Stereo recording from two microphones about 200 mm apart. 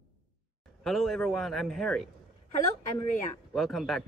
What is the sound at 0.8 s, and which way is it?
Speech, centre (ahead or behind).